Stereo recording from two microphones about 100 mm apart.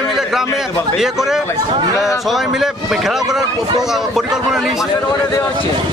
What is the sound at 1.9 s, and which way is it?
Speech, 30° left (ahead or behind).